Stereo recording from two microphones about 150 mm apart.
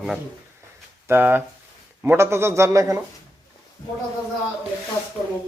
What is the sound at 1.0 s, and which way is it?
Speech, 15° right (ahead or behind).